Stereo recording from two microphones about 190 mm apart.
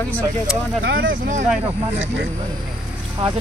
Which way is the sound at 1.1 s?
40° right (ahead or behind).